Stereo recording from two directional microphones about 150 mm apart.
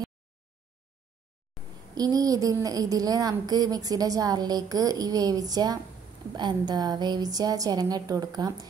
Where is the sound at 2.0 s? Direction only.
25° right (ahead or behind).